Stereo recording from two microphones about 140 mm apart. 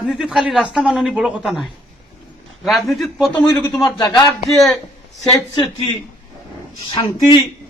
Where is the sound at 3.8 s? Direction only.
25° left (ahead or behind).